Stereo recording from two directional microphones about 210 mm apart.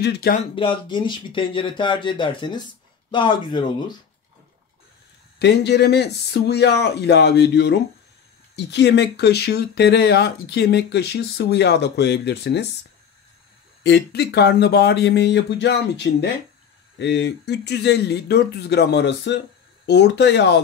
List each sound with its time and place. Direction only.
0.0 s speech: 50° left (ahead or behind)
0.6 s speech: 25° left (ahead or behind)
5.4 s speech: 55° left (ahead or behind)
13.8 s speech: 50° left (ahead or behind)